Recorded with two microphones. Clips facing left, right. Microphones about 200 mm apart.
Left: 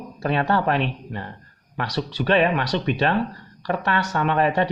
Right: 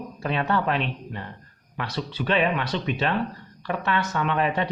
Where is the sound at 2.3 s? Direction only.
40° left (ahead or behind).